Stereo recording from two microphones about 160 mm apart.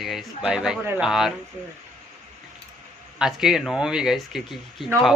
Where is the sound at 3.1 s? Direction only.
5° right (ahead or behind).